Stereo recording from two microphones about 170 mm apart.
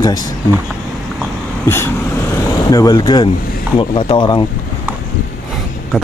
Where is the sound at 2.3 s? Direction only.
20° left (ahead or behind).